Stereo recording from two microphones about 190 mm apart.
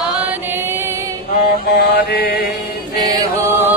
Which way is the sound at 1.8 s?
55° left (ahead or behind).